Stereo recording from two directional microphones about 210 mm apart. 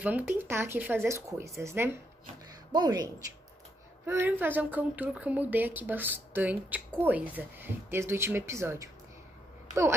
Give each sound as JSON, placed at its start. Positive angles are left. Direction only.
{"t": 0.0, "sound": "a woman's voice", "side_deg": -10}